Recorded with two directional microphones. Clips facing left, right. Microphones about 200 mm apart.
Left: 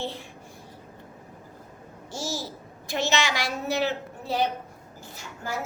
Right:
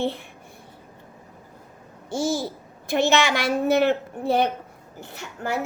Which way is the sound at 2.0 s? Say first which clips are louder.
Right 8 dB; 55° right (ahead or behind).